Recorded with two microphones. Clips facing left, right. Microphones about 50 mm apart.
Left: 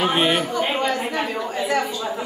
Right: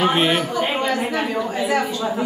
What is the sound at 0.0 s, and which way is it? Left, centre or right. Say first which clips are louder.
A woman's voice: right 1 dB; centre.